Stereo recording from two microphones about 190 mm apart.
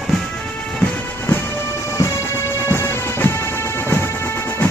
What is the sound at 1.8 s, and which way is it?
Music, 15° left (ahead or behind).